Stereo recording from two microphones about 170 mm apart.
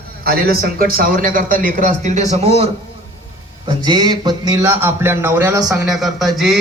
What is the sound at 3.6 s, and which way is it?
Music, 30° right (ahead or behind).